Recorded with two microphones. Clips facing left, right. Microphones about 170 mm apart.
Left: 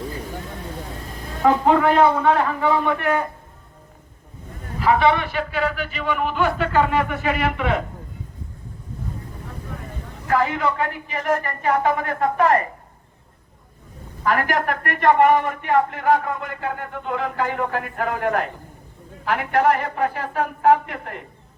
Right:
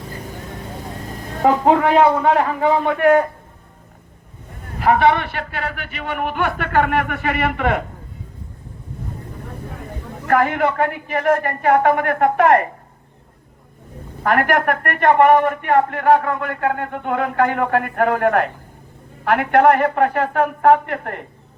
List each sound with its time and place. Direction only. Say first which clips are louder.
2.2 s a man's voice: right 2 dB; 45° right (ahead or behind)
4.8 s a man's voice: right 2 dB; 55° right (ahead or behind)
10.2 s a man's voice: right 4 dB; 55° right (ahead or behind)
14.3 s a man's voice: right 4 dB; 55° right (ahead or behind)